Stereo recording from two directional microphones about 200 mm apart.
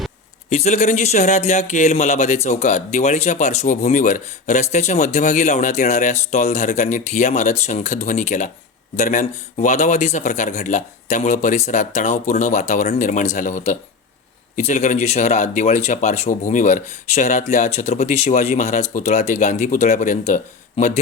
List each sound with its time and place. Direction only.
0.5 s speech: 35° left (ahead or behind)